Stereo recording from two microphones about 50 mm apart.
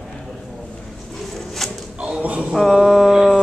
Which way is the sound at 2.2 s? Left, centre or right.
Right.